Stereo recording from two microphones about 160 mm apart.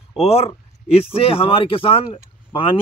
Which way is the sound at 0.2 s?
40° left (ahead or behind).